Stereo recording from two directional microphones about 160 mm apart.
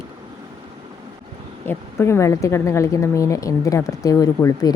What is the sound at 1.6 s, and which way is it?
A woman's voice, 15° left (ahead or behind).